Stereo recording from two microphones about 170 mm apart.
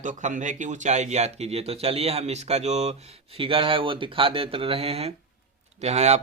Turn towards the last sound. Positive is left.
turn(degrees=-40)  # may be behind; listen again after turning